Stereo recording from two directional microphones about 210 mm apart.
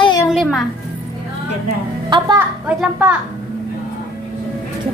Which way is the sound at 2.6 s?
5° right (ahead or behind).